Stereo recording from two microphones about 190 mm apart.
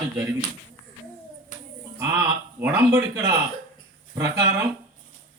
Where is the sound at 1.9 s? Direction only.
15° right (ahead or behind).